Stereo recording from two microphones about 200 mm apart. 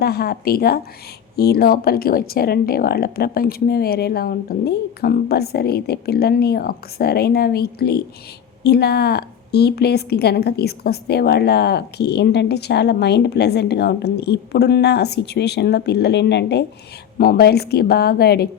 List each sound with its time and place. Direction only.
0.0 s a woman's voice: 50° left (ahead or behind)